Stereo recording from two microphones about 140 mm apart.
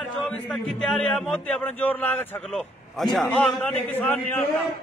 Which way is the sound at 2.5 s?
Centre (ahead or behind).